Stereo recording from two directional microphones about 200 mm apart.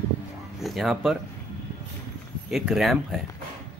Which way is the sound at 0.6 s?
Centre (ahead or behind).